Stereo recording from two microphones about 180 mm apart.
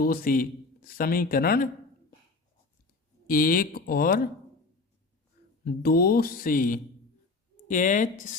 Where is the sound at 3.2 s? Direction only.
50° left (ahead or behind).